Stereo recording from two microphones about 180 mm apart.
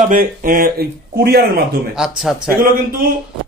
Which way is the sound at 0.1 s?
50° right (ahead or behind).